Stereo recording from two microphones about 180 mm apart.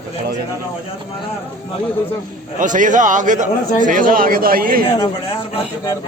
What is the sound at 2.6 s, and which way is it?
Speech, 45° right (ahead or behind).